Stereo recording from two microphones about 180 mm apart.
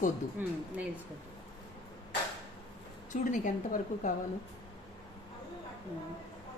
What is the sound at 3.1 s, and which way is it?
A woman's voice, 45° left (ahead or behind).